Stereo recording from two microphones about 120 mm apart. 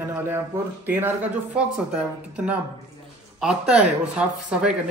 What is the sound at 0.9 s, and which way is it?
Speech, 15° right (ahead or behind).